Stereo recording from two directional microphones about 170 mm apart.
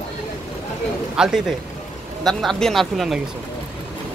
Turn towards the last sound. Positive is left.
turn(degrees=0)  # may be behind; listen again after turning